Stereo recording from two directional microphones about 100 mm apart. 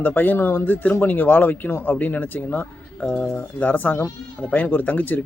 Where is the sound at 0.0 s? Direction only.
15° left (ahead or behind).